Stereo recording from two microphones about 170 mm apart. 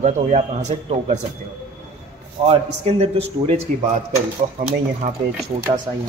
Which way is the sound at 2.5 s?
40° right (ahead or behind).